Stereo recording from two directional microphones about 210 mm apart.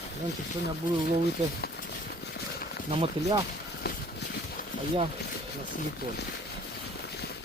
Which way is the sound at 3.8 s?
50° left (ahead or behind).